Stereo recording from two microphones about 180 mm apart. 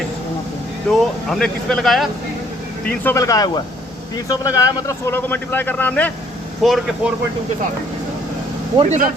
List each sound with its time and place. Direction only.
0.9 s speech: centre (ahead or behind)
3.0 s a man's voice: 15° left (ahead or behind); by 7.1 s centre (ahead or behind)
8.8 s speech: 40° right (ahead or behind)